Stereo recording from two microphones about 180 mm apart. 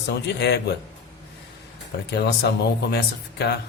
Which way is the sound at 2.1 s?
70° left (ahead or behind).